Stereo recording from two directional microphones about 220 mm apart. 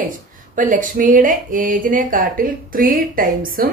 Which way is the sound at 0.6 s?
35° right (ahead or behind).